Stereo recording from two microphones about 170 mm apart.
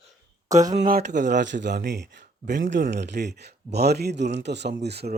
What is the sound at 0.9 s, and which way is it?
A man's voice, 70° right (ahead or behind).